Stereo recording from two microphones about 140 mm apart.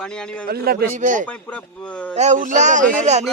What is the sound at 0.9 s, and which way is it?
Speech, 65° right (ahead or behind).